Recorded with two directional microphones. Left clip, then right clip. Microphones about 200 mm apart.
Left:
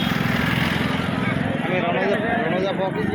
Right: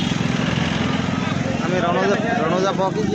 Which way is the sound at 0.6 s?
55° left (ahead or behind).